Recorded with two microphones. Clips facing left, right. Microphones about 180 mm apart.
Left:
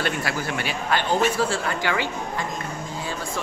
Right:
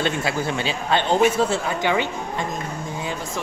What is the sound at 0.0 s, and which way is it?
Speech, 20° right (ahead or behind).